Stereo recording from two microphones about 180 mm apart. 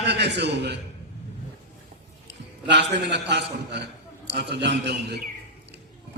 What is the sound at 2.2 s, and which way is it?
A man's voice, 75° right (ahead or behind).